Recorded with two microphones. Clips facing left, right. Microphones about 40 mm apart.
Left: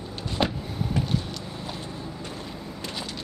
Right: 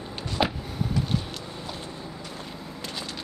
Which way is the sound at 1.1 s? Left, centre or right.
Centre.